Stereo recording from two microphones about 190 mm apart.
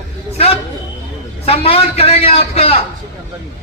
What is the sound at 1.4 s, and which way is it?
A man's voice, 30° left (ahead or behind).